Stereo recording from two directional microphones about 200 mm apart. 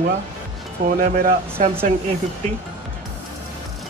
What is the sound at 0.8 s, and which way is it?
Speech, 40° right (ahead or behind).